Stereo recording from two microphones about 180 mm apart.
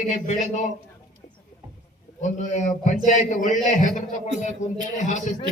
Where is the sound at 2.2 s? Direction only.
40° left (ahead or behind).